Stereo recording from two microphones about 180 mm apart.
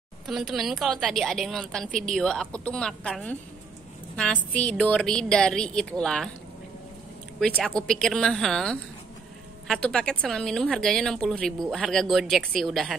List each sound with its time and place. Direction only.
0.3 s a woman's voice: centre (ahead or behind)
1.9 s a woman's voice: 45° right (ahead or behind)
2.1 s a woman's voice: 5° left (ahead or behind)
7.3 s a woman's voice: 5° left (ahead or behind)